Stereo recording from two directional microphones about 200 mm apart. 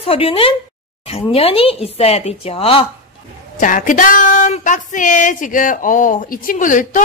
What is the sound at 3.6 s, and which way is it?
Speech, 40° left (ahead or behind).